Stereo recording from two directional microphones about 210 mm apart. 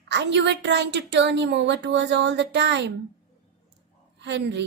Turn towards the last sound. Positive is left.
turn(degrees=-55)  # may be behind; listen again after turning